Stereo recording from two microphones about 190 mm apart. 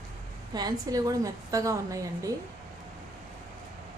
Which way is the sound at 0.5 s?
20° right (ahead or behind).